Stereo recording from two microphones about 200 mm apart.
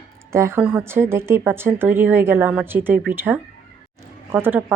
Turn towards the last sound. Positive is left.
turn(degrees=-10)  # may be behind; listen again after turning